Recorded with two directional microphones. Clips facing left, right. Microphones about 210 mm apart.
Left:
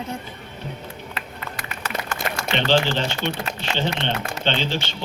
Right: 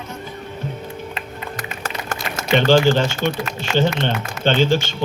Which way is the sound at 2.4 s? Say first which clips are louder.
Right 6 dB; 45° right (ahead or behind).